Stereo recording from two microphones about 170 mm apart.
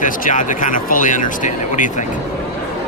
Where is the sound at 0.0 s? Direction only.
50° left (ahead or behind).